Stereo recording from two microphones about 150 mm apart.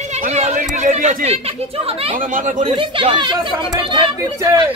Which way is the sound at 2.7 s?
35° right (ahead or behind).